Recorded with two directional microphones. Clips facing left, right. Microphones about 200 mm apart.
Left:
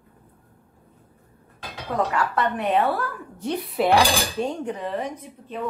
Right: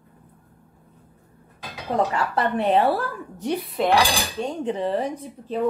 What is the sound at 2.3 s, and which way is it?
Speech, 30° right (ahead or behind).